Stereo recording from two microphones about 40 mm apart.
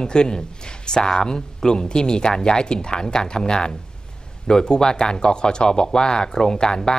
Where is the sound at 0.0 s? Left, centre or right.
Centre.